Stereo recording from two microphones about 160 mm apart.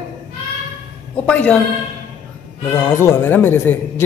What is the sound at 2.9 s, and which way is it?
Speech, 15° left (ahead or behind).